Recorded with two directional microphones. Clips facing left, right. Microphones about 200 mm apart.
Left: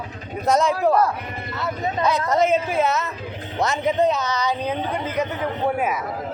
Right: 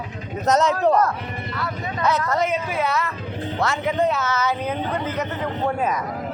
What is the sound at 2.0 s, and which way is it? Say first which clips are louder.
A man's voice: left 2 dB; 10° left (ahead or behind).